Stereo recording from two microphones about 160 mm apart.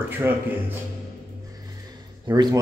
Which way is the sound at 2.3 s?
20° right (ahead or behind).